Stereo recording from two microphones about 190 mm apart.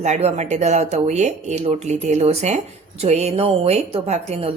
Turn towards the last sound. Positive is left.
turn(degrees=-35)  # may be behind; listen again after turning